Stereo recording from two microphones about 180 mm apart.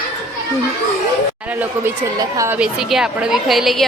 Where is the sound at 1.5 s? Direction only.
10° right (ahead or behind).